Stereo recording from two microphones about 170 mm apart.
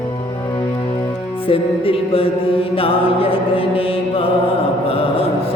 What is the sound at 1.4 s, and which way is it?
Music, 35° left (ahead or behind).